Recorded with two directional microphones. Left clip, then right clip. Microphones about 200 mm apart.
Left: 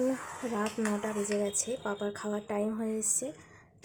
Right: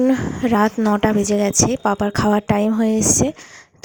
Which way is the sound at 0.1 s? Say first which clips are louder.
Right 16 dB; 45° right (ahead or behind).